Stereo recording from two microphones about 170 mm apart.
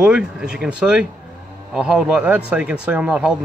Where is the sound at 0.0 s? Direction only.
5° right (ahead or behind).